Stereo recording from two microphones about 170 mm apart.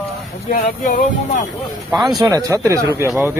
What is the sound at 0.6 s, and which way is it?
Speech, 50° left (ahead or behind).